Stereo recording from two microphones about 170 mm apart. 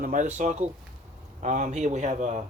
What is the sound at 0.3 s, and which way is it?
Speech, 40° right (ahead or behind).